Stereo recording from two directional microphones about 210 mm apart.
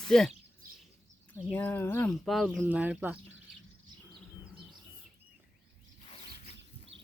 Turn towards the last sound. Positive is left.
turn(degrees=-60)  # may be behind; listen again after turning